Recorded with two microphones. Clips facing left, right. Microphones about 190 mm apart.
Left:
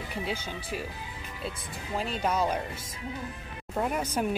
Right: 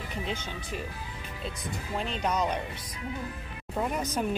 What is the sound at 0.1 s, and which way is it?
Speech, 10° left (ahead or behind).